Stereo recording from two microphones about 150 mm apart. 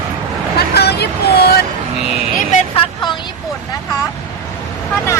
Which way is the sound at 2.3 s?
55° left (ahead or behind).